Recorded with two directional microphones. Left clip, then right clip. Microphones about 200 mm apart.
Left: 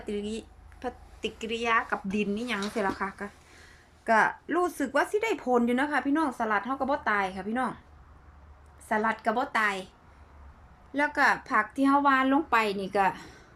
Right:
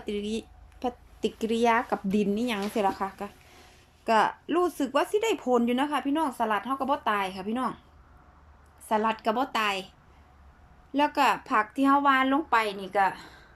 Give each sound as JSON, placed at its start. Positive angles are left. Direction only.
{"t": 0.0, "sound": "speech", "side_deg": -10}
{"t": 8.9, "sound": "speech", "side_deg": -5}
{"t": 10.9, "sound": "speech", "side_deg": -5}